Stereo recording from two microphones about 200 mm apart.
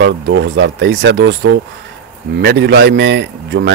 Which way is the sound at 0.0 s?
60° right (ahead or behind).